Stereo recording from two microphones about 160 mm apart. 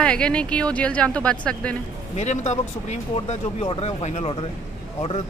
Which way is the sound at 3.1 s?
35° left (ahead or behind).